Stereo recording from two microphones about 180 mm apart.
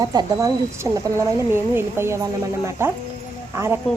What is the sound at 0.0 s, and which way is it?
Speech, 20° right (ahead or behind).